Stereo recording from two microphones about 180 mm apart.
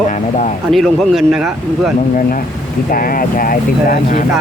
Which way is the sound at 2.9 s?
50° left (ahead or behind).